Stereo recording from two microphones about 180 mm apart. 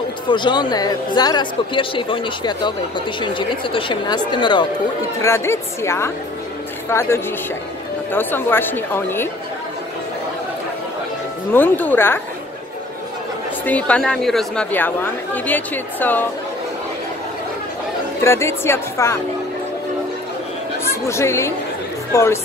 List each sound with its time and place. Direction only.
0.3 s speech: 25° left (ahead or behind)
5.2 s speech: 15° left (ahead or behind)
11.5 s speech: 10° left (ahead or behind)
13.7 s speech: 5° left (ahead or behind)
18.2 s speech: 15° left (ahead or behind)
20.9 s speech: 15° left (ahead or behind)